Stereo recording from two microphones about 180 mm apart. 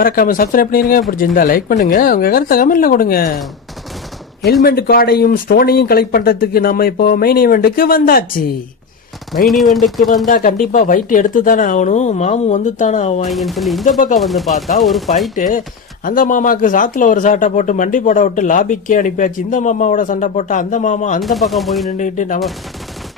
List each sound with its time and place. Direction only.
0.0 s speech: 50° left (ahead or behind)
4.6 s speech: 60° left (ahead or behind)
9.5 s speech: centre (ahead or behind)
10.2 s speech: 50° left (ahead or behind)
13.3 s speech: centre (ahead or behind)
15.4 s speech: 45° left (ahead or behind)
21.2 s speech: centre (ahead or behind)
21.8 s speech: 45° left (ahead or behind)